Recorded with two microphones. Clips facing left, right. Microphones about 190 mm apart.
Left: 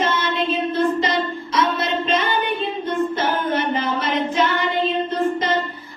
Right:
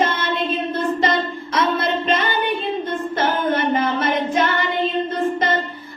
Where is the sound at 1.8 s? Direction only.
50° right (ahead or behind).